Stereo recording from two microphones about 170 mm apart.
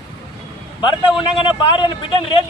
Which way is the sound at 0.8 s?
30° left (ahead or behind).